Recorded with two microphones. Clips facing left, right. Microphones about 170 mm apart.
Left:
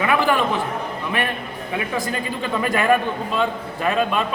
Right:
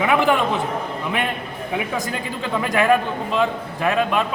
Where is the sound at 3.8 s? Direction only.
5° right (ahead or behind).